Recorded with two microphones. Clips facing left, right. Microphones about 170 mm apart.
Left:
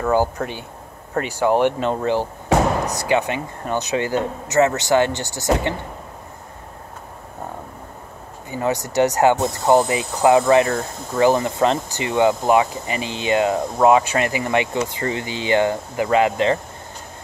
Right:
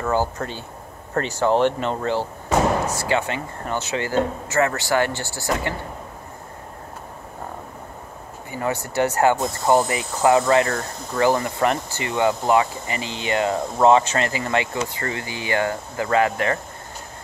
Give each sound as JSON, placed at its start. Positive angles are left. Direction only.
{"t": 0.1, "sound": "speech", "side_deg": 15}
{"t": 8.5, "sound": "speech", "side_deg": 20}